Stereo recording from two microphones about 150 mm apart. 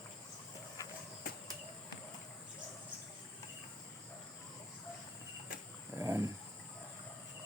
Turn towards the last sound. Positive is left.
turn(degrees=-20)  # may be behind; listen again after turning